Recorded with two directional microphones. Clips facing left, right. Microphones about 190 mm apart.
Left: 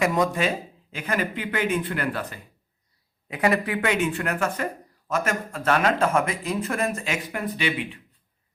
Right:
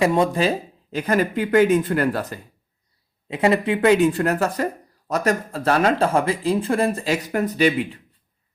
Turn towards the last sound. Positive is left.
turn(degrees=-40)  # may be behind; listen again after turning